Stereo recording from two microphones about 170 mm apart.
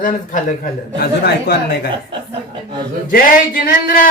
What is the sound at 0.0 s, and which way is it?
Speech, 50° left (ahead or behind).